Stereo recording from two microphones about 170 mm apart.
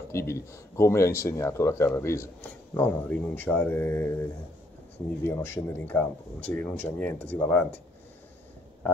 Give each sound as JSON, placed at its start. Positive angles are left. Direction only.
{"t": 0.1, "sound": "speech", "side_deg": 15}
{"t": 5.2, "sound": "speech", "side_deg": 15}